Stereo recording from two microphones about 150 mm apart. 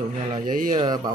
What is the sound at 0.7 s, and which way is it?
Speech, 30° right (ahead or behind).